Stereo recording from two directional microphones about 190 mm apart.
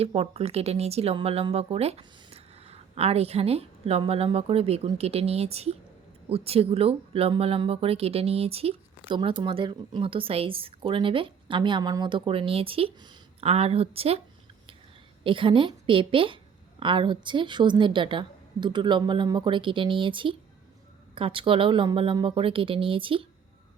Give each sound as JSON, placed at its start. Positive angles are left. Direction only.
{"t": 0.0, "sound": "speech", "side_deg": -30}
{"t": 15.2, "sound": "speech", "side_deg": -25}